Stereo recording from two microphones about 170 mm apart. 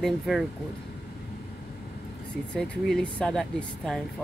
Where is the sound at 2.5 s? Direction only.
5° left (ahead or behind).